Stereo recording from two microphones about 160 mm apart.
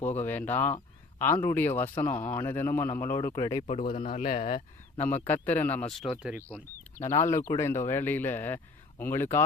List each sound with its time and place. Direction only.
0.3 s speech: 10° left (ahead or behind)
3.8 s a man's voice: 60° left (ahead or behind)
4.9 s speech: 10° left (ahead or behind); by 6.4 s 5° right (ahead or behind)
6.9 s speech: 45° left (ahead or behind)
7.4 s speech: 15° left (ahead or behind)